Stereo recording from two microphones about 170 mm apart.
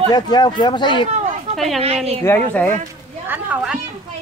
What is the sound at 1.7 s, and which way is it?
Speech, 35° right (ahead or behind).